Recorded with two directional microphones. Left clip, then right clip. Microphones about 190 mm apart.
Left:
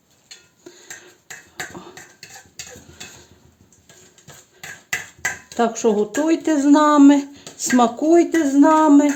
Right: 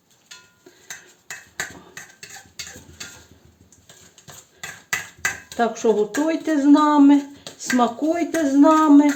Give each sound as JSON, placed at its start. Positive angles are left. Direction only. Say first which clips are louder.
{"t": 5.5, "sound": "speech", "louder": "left 1 dB", "side_deg": 50}